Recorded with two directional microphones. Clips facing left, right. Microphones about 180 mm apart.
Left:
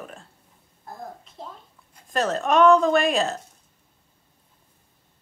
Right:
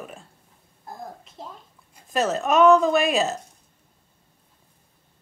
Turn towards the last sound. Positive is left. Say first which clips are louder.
# even
turn(degrees=-5)  # may be behind; listen again after turning